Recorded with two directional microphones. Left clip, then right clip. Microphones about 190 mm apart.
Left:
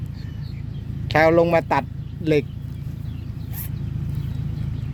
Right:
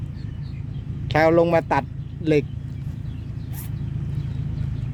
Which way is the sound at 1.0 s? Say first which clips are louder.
Left 1 dB; 15° right (ahead or behind).